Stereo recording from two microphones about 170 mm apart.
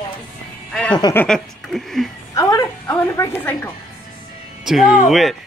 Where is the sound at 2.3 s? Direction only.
20° left (ahead or behind).